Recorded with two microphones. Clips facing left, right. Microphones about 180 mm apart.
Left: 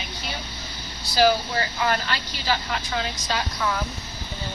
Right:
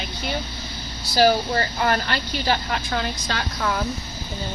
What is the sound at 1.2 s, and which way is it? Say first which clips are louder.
Speech: right 2 dB; 45° right (ahead or behind).